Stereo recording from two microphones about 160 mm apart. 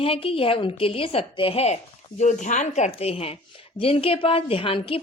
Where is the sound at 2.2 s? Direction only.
50° left (ahead or behind).